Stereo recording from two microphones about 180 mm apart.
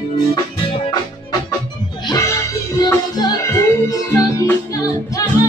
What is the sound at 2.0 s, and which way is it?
Music, 15° left (ahead or behind).